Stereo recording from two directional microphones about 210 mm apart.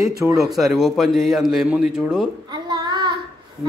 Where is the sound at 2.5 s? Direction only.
20° right (ahead or behind).